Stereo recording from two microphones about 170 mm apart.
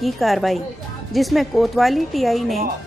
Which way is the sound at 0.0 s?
Centre (ahead or behind).